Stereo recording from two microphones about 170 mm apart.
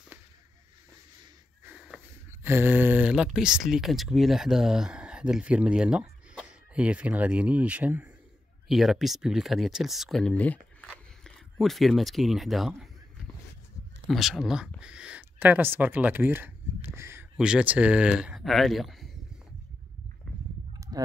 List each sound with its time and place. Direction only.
1.6 s wheeze: 10° right (ahead or behind)
2.4 s speech: 10° right (ahead or behind)
14.0 s speech: centre (ahead or behind)
20.7 s fowl: 20° right (ahead or behind)